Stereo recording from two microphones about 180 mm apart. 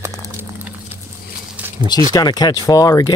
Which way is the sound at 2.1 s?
20° left (ahead or behind).